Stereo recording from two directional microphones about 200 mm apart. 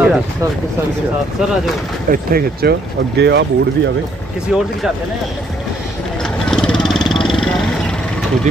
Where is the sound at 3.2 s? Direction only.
60° right (ahead or behind).